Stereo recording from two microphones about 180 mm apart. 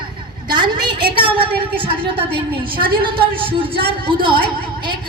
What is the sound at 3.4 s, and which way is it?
Speech, 30° right (ahead or behind).